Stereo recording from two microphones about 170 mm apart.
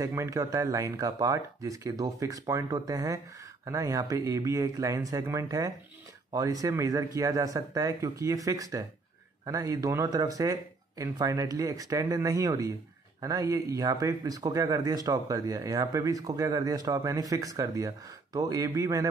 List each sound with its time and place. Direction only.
0.0 s speech: 15° right (ahead or behind)